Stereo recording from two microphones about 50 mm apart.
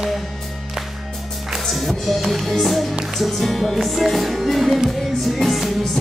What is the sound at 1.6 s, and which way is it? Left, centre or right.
Music, centre.